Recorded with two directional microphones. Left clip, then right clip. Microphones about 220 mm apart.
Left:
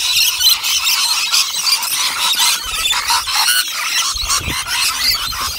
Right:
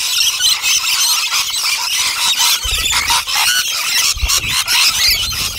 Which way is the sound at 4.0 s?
40° right (ahead or behind).